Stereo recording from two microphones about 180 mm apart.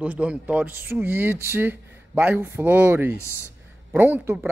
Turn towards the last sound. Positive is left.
turn(degrees=-10)  # may be behind; listen again after turning